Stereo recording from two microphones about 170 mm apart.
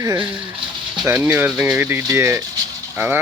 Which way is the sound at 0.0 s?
20° right (ahead or behind).